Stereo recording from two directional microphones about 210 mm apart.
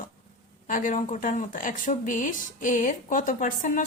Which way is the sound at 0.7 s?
40° left (ahead or behind).